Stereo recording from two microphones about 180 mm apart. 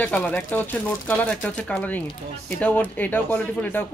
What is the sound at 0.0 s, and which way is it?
Speech, 10° left (ahead or behind).